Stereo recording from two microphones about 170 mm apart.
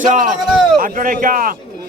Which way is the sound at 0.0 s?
45° right (ahead or behind).